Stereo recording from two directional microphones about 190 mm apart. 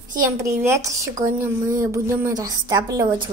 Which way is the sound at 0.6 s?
15° right (ahead or behind).